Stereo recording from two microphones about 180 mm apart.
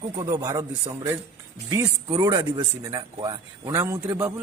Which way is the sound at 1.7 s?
20° right (ahead or behind).